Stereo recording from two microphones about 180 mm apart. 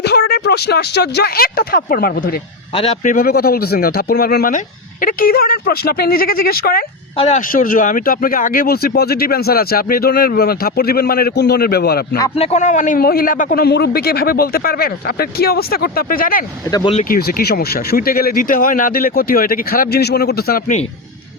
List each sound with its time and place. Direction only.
0.0 s speech: 65° left (ahead or behind)
2.7 s speech: 35° left (ahead or behind); by 6.8 s 55° left (ahead or behind)
7.2 s speech: 40° left (ahead or behind); by 12.0 s 60° left (ahead or behind)
12.4 s speech: 40° left (ahead or behind)
16.6 s speech: 20° left (ahead or behind)
16.9 s speech: 50° left (ahead or behind)